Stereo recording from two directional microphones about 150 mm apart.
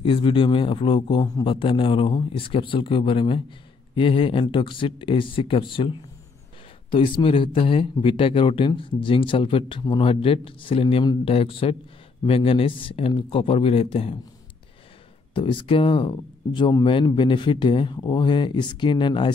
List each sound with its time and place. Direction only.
0.0 s speech: 35° left (ahead or behind)
15.3 s speech: 35° left (ahead or behind)